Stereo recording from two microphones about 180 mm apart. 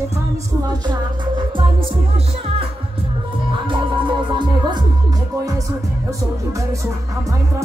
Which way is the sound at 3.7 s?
25° right (ahead or behind).